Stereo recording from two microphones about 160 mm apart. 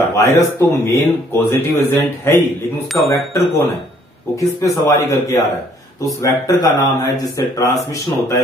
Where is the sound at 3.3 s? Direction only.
15° left (ahead or behind).